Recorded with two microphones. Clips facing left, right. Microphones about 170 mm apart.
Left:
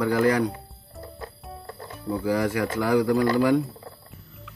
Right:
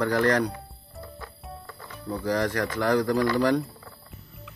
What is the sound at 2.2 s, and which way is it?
Speech, 5° left (ahead or behind).